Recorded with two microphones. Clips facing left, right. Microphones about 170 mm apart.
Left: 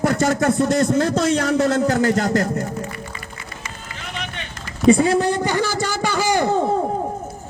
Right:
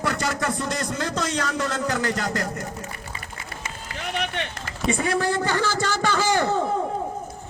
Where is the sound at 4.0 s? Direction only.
60° right (ahead or behind).